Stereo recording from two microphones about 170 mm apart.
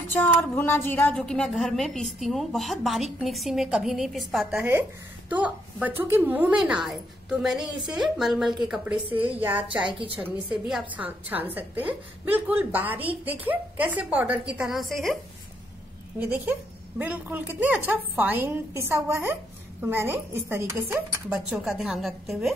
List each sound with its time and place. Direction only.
0.1 s a woman's voice: 10° left (ahead or behind)
8.9 s a woman's voice: 30° right (ahead or behind)
9.2 s speech: 10° right (ahead or behind)
16.2 s speech: 10° right (ahead or behind)